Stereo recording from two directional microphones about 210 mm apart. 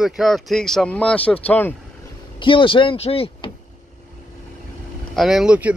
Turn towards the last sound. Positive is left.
turn(degrees=-5)  # may be behind; listen again after turning